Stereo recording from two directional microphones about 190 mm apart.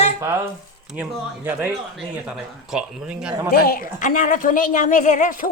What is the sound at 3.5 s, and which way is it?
Speech, 55° left (ahead or behind).